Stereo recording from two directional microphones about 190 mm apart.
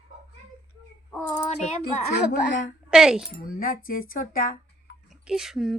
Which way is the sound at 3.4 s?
50° left (ahead or behind).